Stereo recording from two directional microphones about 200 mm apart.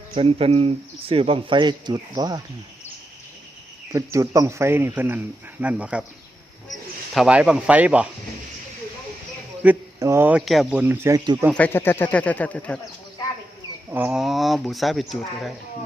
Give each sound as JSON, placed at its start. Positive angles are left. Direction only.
{"t": 0.1, "sound": "speech", "side_deg": -30}
{"t": 3.9, "sound": "speech", "side_deg": -15}
{"t": 7.1, "sound": "speech", "side_deg": -5}
{"t": 9.6, "sound": "speech", "side_deg": -10}
{"t": 11.5, "sound": "speech", "side_deg": 10}
{"t": 13.9, "sound": "speech", "side_deg": -5}